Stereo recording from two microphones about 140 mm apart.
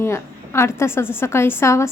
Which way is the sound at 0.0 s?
20° left (ahead or behind).